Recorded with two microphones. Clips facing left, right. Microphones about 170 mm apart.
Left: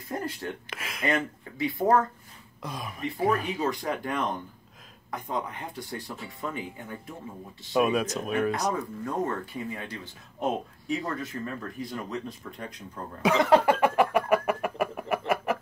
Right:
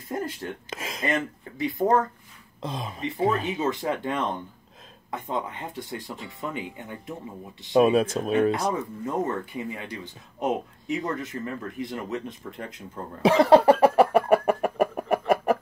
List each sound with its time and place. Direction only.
0.7 s speech: 25° right (ahead or behind)
13.2 s chicken: 30° right (ahead or behind)